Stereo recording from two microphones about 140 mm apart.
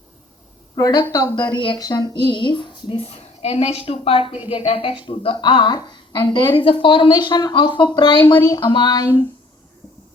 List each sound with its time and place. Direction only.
0.8 s a woman's voice: 30° left (ahead or behind)